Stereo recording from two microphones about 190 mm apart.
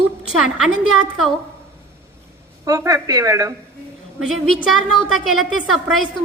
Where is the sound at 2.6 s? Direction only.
20° right (ahead or behind).